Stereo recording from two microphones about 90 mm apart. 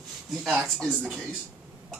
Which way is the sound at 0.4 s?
10° right (ahead or behind).